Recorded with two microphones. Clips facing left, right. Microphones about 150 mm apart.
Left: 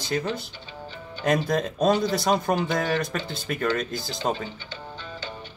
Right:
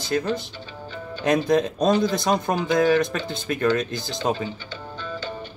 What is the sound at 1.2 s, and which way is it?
Speech, 5° left (ahead or behind).